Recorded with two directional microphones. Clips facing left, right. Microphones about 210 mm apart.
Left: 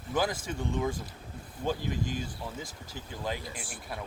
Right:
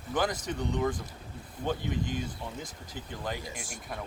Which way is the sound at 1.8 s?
55° right (ahead or behind).